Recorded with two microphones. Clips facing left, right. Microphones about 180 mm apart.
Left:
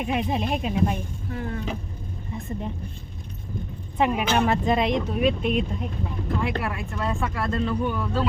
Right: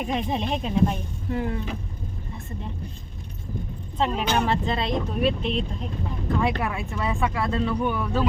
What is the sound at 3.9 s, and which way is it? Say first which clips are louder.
Speech: left 2 dB; 10° left (ahead or behind).